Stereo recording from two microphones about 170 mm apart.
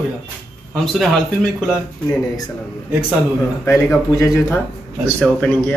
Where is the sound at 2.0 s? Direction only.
20° left (ahead or behind).